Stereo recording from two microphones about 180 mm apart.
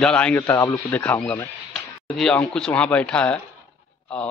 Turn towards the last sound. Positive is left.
turn(degrees=5)  # may be behind; listen again after turning